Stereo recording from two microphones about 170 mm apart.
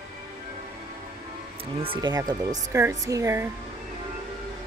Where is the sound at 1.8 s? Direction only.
25° right (ahead or behind).